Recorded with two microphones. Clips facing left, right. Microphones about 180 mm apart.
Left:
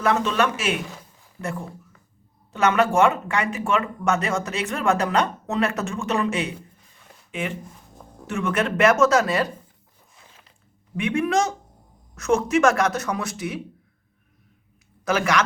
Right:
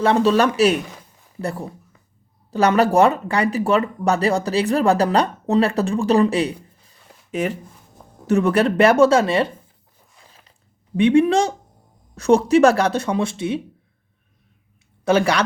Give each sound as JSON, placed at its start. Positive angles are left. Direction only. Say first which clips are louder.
{"t": 0.0, "sound": "speech", "louder": "right 6 dB", "side_deg": -30}
{"t": 10.9, "sound": "speech", "louder": "right 7 dB", "side_deg": -30}
{"t": 15.0, "sound": "speech", "louder": "right 4 dB", "side_deg": -30}